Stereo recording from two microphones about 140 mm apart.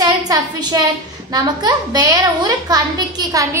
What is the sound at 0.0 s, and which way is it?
A woman's voice, 30° right (ahead or behind).